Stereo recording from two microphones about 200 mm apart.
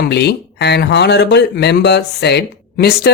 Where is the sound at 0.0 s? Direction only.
55° left (ahead or behind).